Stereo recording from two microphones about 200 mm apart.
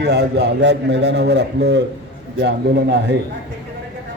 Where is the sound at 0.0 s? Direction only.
55° right (ahead or behind).